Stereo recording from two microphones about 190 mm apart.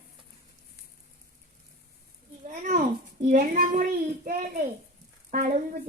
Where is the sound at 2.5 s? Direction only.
40° right (ahead or behind).